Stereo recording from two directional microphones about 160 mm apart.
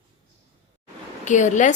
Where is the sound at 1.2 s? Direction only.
50° left (ahead or behind).